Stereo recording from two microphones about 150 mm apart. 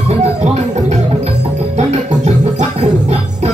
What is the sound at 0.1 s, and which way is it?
Music, 45° right (ahead or behind).